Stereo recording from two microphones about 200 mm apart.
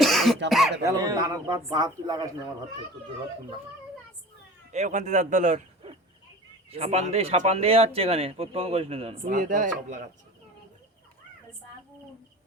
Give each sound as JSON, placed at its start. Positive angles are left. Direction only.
{"t": 0.0, "sound": "throat clearing", "side_deg": 0}
{"t": 0.9, "sound": "speech", "side_deg": -20}
{"t": 4.7, "sound": "speech", "side_deg": -35}